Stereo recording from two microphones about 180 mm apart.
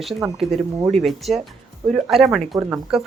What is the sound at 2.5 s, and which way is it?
Speech, 15° right (ahead or behind).